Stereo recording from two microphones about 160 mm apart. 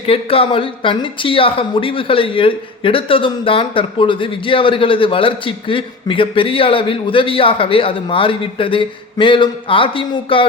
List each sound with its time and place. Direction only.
0.0 s a woman's voice: 35° left (ahead or behind)